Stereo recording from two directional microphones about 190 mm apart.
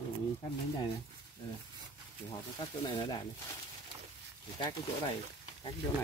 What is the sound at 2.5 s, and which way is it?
Speech, 25° left (ahead or behind).